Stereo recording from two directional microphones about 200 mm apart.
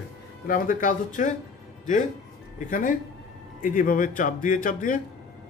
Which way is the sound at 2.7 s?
40° left (ahead or behind).